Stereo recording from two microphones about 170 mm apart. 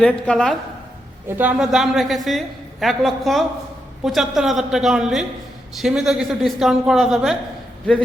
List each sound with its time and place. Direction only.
0.0 s a woman's voice: 5° left (ahead or behind)
1.4 s a woman's voice: 5° right (ahead or behind)